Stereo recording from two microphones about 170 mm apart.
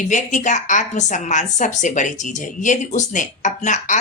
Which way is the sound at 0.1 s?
45° left (ahead or behind).